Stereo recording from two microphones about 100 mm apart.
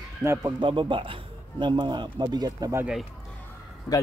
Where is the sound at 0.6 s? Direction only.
55° right (ahead or behind).